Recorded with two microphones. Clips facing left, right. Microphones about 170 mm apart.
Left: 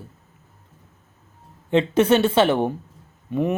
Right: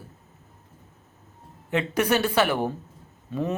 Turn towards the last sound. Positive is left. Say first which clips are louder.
# left 5 dB
turn(degrees=20)  # may be behind; listen again after turning